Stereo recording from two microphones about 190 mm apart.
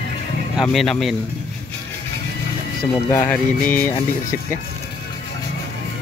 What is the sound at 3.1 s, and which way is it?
Music, 10° left (ahead or behind).